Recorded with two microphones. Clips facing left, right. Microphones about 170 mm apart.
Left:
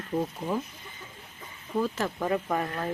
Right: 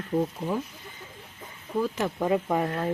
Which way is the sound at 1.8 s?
15° right (ahead or behind).